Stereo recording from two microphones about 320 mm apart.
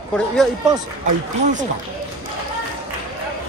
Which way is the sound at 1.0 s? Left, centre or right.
Right.